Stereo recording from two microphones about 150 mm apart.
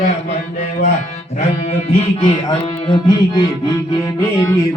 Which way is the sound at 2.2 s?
30° left (ahead or behind).